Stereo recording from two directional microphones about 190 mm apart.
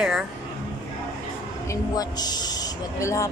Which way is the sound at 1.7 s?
20° left (ahead or behind).